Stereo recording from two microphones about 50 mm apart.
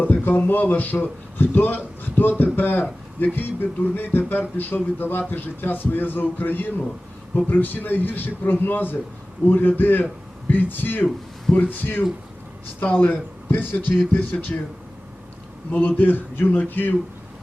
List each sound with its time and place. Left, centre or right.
0.0 s a man's voice: left
16.0 s a man's voice: left